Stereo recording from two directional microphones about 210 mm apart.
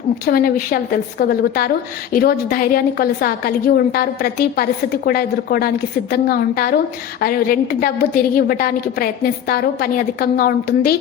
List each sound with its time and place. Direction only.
0.3 s a woman's voice: 45° left (ahead or behind)